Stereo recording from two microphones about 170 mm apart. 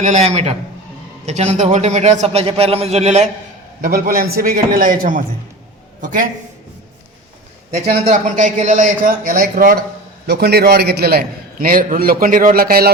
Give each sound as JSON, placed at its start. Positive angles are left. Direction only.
{"t": 0.0, "sound": "a man's voice", "side_deg": -40}
{"t": 3.8, "sound": "a man's voice", "side_deg": -60}
{"t": 7.7, "sound": "a man's voice", "side_deg": -40}
{"t": 10.2, "sound": "a man's voice", "side_deg": -70}